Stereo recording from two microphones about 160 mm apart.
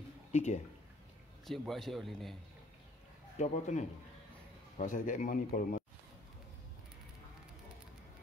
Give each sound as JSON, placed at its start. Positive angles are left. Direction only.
{"t": 0.3, "sound": "speech", "side_deg": 50}
{"t": 1.4, "sound": "speech", "side_deg": 0}
{"t": 3.3, "sound": "a man's voice", "side_deg": 45}